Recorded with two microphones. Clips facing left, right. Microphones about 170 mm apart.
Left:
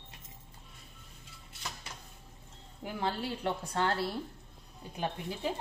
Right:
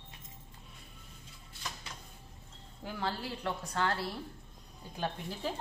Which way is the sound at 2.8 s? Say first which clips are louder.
Left 2 dB; 15° left (ahead or behind).